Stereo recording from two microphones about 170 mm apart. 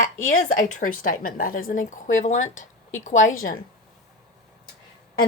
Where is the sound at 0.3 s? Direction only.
50° left (ahead or behind).